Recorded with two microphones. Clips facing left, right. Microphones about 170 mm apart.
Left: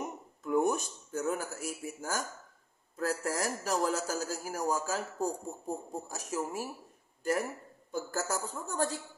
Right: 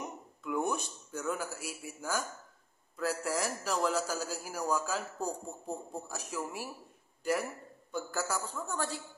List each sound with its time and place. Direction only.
0.4 s a sound: 40° left (ahead or behind)
3.0 s a man's voice: 45° left (ahead or behind)
7.9 s a man's voice: 45° left (ahead or behind)